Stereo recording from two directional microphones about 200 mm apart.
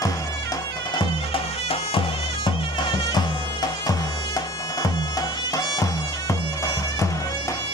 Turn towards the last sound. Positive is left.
turn(degrees=15)  # may be behind; listen again after turning